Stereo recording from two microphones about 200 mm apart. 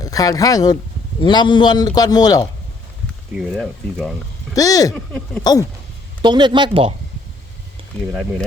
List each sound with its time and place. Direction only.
0.0 s a man's voice: 15° left (ahead or behind)
3.3 s speech: centre (ahead or behind)
4.5 s a man's voice: 20° left (ahead or behind)
6.2 s speech: 20° right (ahead or behind)